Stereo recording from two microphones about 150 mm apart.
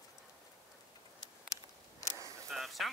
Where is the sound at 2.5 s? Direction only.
Centre (ahead or behind).